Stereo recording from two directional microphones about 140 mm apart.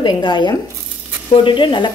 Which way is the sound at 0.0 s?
35° left (ahead or behind).